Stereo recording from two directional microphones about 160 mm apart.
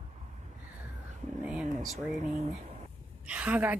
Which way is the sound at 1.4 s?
5° right (ahead or behind).